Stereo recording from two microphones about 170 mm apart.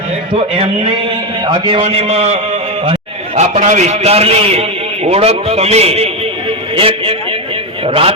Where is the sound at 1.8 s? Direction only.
35° right (ahead or behind).